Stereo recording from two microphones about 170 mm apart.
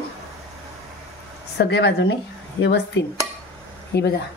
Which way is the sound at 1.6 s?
80° left.